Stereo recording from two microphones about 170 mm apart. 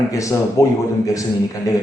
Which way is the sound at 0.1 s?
20° left (ahead or behind).